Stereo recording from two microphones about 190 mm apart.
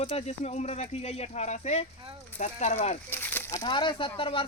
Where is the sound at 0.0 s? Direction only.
30° left (ahead or behind).